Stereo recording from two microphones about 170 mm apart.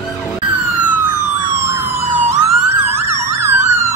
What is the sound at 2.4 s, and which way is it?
Emergency vehicle, 15° right (ahead or behind).